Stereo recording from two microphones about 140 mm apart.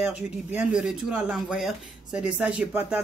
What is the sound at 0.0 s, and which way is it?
Speech, 15° right (ahead or behind).